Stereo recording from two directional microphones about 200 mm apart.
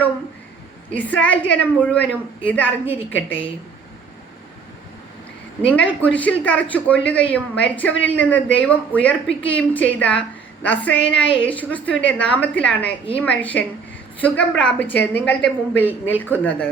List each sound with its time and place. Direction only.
0.9 s speech: 10° left (ahead or behind)
5.6 s speech: 5° left (ahead or behind)
10.9 s a woman's voice: 65° left (ahead or behind)
11.3 s speech: 5° left (ahead or behind)